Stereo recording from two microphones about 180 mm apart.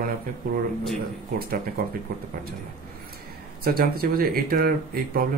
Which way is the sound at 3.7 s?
55° right (ahead or behind).